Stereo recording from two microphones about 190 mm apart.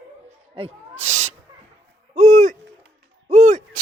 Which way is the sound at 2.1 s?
35° right (ahead or behind).